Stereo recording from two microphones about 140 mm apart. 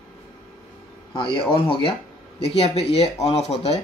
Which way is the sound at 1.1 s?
40° left (ahead or behind).